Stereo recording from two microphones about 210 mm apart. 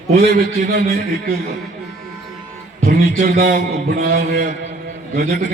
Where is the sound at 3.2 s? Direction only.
45° right (ahead or behind).